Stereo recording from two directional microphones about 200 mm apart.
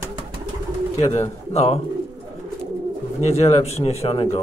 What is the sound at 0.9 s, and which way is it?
Speech, 35° left (ahead or behind).